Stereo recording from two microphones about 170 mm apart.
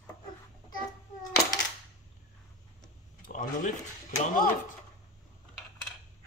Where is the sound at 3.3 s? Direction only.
50° left (ahead or behind).